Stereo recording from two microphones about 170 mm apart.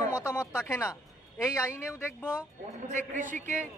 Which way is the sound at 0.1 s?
20° left (ahead or behind).